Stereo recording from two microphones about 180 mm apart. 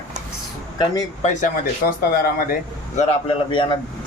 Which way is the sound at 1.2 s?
45° left (ahead or behind).